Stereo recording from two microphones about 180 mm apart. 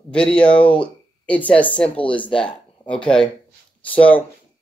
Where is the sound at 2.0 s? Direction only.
30° left (ahead or behind).